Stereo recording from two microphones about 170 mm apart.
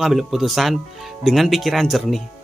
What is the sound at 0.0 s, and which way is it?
Speech, centre (ahead or behind).